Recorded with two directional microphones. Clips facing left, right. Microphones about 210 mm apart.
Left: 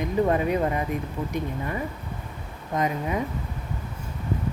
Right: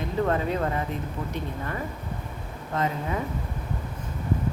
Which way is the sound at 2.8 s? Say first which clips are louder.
Left 2 dB; 15° left (ahead or behind).